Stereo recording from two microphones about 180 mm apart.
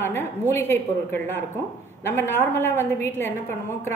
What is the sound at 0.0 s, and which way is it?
A woman's voice, 15° left (ahead or behind).